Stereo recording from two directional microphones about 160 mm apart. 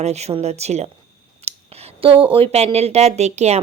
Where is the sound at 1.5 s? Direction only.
40° right (ahead or behind).